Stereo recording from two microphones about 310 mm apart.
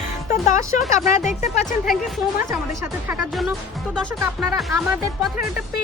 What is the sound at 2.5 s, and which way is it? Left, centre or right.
Speech, centre.